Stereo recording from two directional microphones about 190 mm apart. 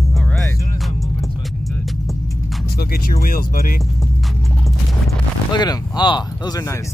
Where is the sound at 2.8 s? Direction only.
50° left (ahead or behind).